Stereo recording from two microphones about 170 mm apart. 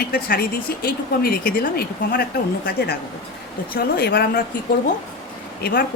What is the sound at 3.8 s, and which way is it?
Speech, 70° left (ahead or behind).